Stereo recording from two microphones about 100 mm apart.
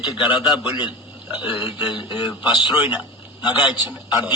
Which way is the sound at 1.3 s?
15° right (ahead or behind).